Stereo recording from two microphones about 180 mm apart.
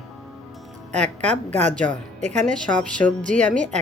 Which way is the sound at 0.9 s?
40° right (ahead or behind).